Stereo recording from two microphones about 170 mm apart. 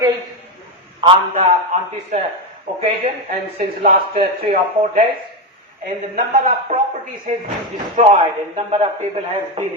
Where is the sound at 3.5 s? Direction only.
55° right (ahead or behind).